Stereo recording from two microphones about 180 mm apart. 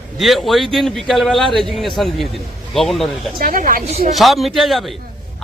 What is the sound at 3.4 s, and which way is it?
Speech, 50° right (ahead or behind).